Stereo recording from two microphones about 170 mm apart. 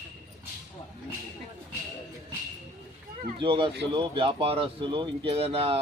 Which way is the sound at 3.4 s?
30° right (ahead or behind).